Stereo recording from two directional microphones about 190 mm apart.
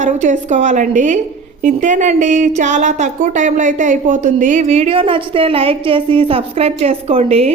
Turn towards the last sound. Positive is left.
turn(degrees=-30)  # may be behind; listen again after turning